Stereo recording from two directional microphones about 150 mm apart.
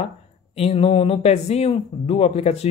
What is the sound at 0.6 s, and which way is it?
Speech, 40° left (ahead or behind).